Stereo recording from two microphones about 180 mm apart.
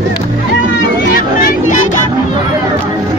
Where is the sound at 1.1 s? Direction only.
50° left (ahead or behind).